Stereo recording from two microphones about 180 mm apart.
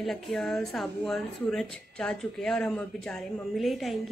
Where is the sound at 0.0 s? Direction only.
Centre (ahead or behind).